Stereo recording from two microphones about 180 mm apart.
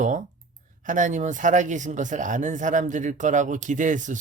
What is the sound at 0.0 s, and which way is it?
Speech, 45° right (ahead or behind).